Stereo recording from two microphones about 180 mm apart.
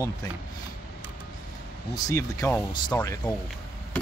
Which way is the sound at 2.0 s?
20° left (ahead or behind).